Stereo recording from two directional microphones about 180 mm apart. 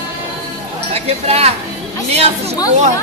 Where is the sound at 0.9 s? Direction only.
35° right (ahead or behind).